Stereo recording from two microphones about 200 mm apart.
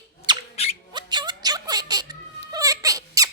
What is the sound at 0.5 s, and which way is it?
Squawk, 30° left (ahead or behind).